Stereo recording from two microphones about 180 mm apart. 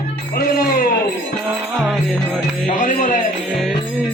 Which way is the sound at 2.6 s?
45° left (ahead or behind).